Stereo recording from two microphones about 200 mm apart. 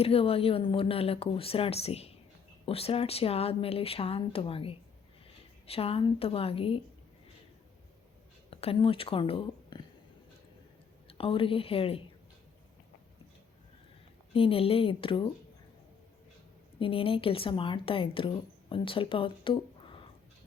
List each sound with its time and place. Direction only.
0.0 s a woman's voice: 30° left (ahead or behind)
8.4 s speech: 30° left (ahead or behind)
11.1 s a woman's voice: 25° left (ahead or behind)
14.3 s a woman's voice: 30° left (ahead or behind)
16.8 s a woman's voice: 25° left (ahead or behind)